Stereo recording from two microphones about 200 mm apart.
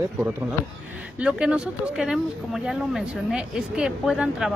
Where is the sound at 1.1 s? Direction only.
5° right (ahead or behind).